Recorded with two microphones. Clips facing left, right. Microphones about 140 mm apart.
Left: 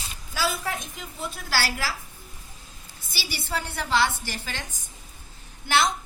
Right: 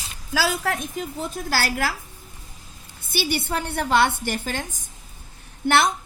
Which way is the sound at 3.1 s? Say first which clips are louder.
Right 7 dB; 55° right (ahead or behind).